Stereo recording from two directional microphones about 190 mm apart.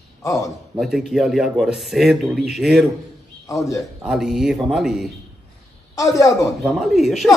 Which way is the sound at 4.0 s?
Centre (ahead or behind).